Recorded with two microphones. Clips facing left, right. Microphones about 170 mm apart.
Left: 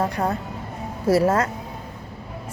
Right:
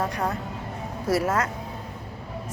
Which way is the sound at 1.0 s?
30° left (ahead or behind).